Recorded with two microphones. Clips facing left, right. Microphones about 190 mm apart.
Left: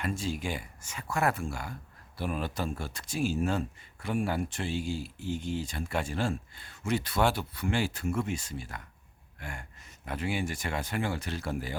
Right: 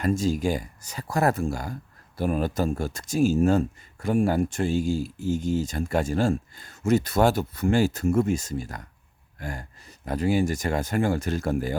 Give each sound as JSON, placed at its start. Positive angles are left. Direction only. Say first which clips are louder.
{"t": 0.0, "sound": "speech", "louder": "right 9 dB", "side_deg": -40}